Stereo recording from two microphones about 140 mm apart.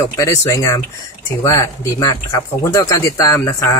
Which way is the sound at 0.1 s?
25° left (ahead or behind).